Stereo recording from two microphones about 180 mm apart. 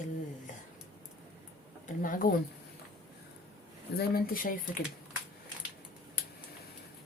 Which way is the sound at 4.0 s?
55° left (ahead or behind).